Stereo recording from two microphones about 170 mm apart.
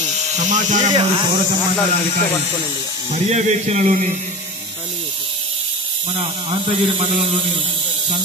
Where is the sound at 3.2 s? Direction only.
40° right (ahead or behind).